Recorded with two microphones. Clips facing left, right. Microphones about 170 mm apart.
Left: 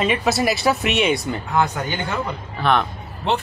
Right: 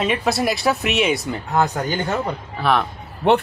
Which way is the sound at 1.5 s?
35° right (ahead or behind).